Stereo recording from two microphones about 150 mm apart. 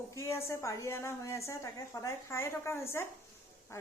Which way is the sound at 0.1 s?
20° left (ahead or behind).